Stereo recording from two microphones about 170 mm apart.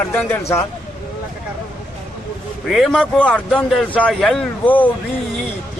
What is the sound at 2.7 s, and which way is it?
Speech, centre (ahead or behind).